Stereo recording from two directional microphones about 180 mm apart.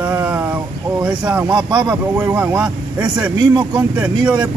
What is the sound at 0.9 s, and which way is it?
Speech, 10° right (ahead or behind).